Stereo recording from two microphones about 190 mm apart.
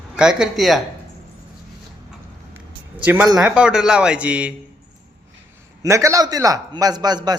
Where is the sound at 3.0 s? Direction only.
10° right (ahead or behind).